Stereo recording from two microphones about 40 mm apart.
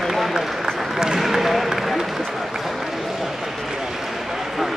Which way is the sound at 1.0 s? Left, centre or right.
Centre.